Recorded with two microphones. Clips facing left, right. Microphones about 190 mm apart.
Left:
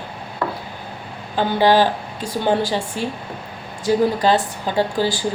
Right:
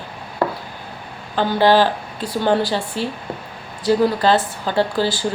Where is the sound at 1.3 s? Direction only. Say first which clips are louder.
Right 1 dB; 15° left (ahead or behind).